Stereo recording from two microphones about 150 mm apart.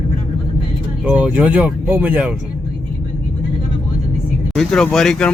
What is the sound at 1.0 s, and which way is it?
Speech, 10° right (ahead or behind).